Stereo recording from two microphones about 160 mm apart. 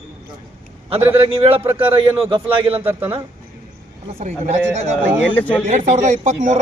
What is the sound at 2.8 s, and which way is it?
Speech, 10° right (ahead or behind).